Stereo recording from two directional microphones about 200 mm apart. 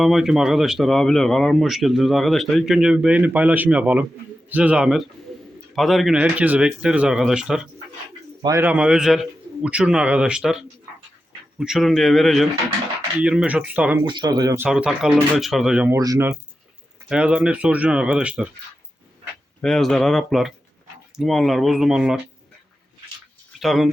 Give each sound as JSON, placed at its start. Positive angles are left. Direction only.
{"t": 0.0, "sound": "speech", "side_deg": 0}
{"t": 8.4, "sound": "speech", "side_deg": -20}
{"t": 8.6, "sound": "speech", "side_deg": -5}
{"t": 11.6, "sound": "speech", "side_deg": 0}
{"t": 14.0, "sound": "speech", "side_deg": -20}
{"t": 14.7, "sound": "speech", "side_deg": -5}
{"t": 19.6, "sound": "speech", "side_deg": 0}
{"t": 23.6, "sound": "speech", "side_deg": 0}